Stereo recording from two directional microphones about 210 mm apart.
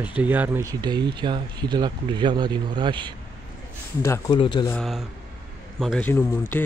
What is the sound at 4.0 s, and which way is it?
Speech, 15° left (ahead or behind).